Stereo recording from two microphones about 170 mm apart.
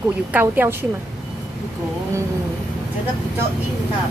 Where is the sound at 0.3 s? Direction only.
10° right (ahead or behind).